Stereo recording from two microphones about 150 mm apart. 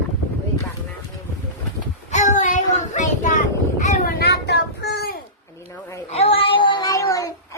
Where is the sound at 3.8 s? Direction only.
70° left (ahead or behind); by 5.2 s 90° left.